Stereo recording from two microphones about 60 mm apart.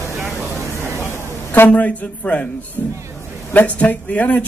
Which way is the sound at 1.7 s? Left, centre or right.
Left.